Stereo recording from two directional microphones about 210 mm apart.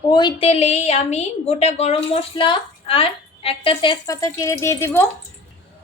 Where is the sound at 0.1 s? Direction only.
20° left (ahead or behind).